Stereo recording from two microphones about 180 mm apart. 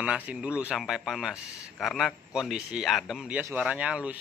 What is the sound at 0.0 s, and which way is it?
A man's voice, 5° right (ahead or behind).